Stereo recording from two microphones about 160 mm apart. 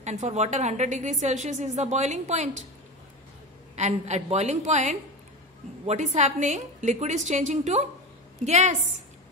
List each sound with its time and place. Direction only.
0.0 s a woman's voice: 45° right (ahead or behind)
3.7 s a woman's voice: 45° right (ahead or behind)
6.1 s a woman's voice: 50° right (ahead or behind)